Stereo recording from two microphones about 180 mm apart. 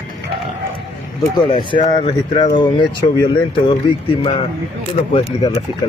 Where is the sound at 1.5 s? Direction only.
25° left (ahead or behind).